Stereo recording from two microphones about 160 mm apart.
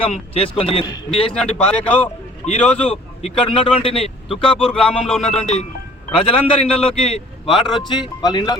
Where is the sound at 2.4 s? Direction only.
40° left (ahead or behind).